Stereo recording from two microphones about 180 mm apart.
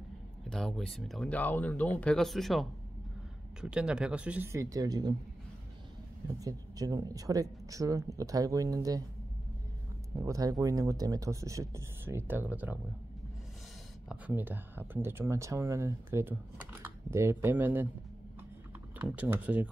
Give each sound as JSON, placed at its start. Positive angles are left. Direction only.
{"t": 0.5, "sound": "speech", "side_deg": 5}
{"t": 3.6, "sound": "speech", "side_deg": -5}
{"t": 6.4, "sound": "speech", "side_deg": -20}
{"t": 10.1, "sound": "speech", "side_deg": -20}
{"t": 14.0, "sound": "speech", "side_deg": -10}
{"t": 18.9, "sound": "speech", "side_deg": -10}